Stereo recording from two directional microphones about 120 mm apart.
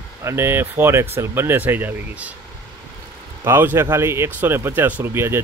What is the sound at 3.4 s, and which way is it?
Speech, 20° right (ahead or behind).